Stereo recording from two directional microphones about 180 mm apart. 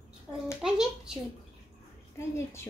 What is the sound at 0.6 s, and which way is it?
Speech, 5° right (ahead or behind).